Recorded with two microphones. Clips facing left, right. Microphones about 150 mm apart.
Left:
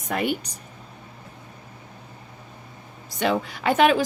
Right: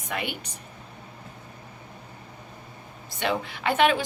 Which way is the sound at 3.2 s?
40° left (ahead or behind).